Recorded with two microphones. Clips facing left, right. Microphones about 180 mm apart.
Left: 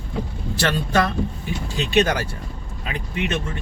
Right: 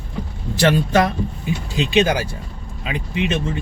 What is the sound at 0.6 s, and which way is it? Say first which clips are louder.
Speech: right 5 dB; 15° right (ahead or behind).